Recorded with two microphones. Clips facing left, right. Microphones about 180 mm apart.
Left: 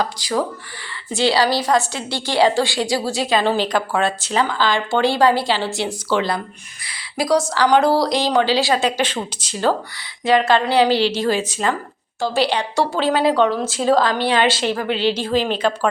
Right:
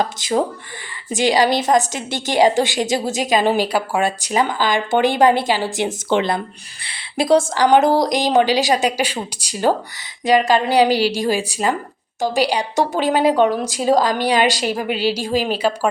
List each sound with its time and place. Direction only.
0.0 s a woman's voice: 20° right (ahead or behind)